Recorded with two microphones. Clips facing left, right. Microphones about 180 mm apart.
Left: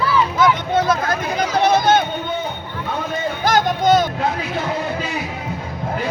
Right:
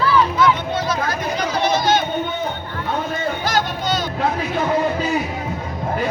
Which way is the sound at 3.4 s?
50° left (ahead or behind).